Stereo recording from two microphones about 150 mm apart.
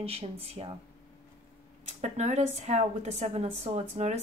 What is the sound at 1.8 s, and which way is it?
A woman's voice, 50° right (ahead or behind).